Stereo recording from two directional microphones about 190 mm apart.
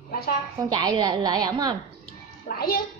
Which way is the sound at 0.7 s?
20° right (ahead or behind).